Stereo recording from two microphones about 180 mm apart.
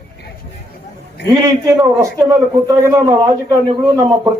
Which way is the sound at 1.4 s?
15° right (ahead or behind).